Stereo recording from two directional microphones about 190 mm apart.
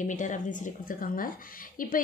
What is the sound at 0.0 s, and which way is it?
A woman's voice, 40° left (ahead or behind).